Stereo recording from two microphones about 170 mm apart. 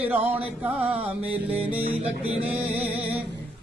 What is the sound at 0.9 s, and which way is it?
Music, 35° right (ahead or behind).